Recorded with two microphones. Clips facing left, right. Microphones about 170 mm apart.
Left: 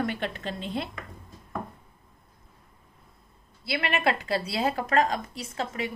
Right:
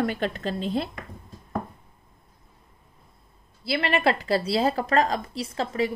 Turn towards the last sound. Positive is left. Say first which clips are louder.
# right 5 dB
turn(degrees=-35)  # may be behind; listen again after turning